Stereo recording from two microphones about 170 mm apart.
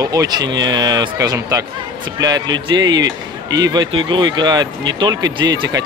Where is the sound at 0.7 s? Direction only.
25° right (ahead or behind).